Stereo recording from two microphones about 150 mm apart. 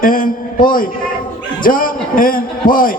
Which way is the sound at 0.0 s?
70° left (ahead or behind).